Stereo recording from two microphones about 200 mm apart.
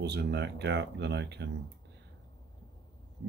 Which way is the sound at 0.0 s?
55° right (ahead or behind).